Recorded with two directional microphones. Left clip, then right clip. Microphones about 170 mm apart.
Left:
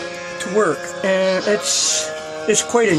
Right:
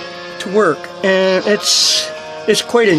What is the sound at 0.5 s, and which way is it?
Speech, 45° right (ahead or behind).